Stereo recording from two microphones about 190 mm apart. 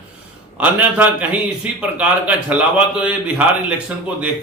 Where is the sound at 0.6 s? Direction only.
10° right (ahead or behind).